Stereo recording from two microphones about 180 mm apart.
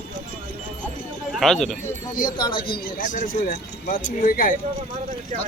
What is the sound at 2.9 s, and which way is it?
Speech, 45° left (ahead or behind).